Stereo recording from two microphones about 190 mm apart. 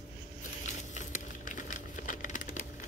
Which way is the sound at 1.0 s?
40° left (ahead or behind).